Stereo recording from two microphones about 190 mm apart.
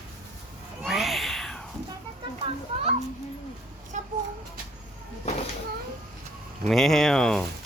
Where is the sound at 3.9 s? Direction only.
40° right (ahead or behind).